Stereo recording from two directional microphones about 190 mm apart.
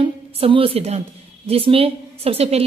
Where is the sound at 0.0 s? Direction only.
30° right (ahead or behind).